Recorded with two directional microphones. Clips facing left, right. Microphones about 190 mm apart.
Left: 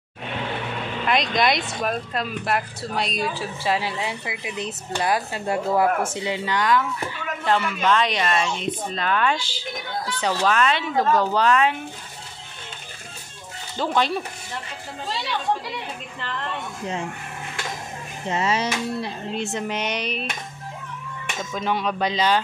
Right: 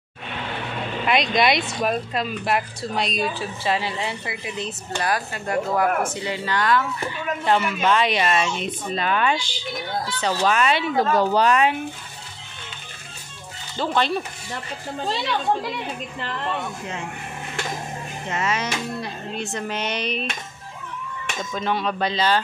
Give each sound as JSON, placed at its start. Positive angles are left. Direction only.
{"t": 1.0, "sound": "speech", "side_deg": -5}
{"t": 7.4, "sound": "speech", "side_deg": -10}
{"t": 9.4, "sound": "speech", "side_deg": 5}
{"t": 10.4, "sound": "speech", "side_deg": -10}
{"t": 13.7, "sound": "speech", "side_deg": 10}
{"t": 18.3, "sound": "speech", "side_deg": 30}
{"t": 21.5, "sound": "speech", "side_deg": 10}